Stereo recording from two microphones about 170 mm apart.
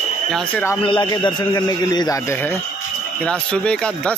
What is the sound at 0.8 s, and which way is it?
A man's voice, 25° left (ahead or behind).